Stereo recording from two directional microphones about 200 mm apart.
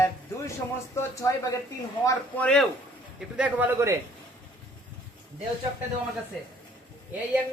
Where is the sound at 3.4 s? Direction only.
10° right (ahead or behind).